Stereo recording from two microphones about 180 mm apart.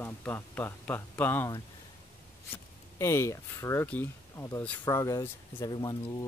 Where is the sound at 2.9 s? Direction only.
15° left (ahead or behind).